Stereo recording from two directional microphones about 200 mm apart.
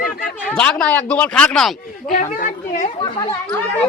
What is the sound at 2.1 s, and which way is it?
Speech, 40° left (ahead or behind).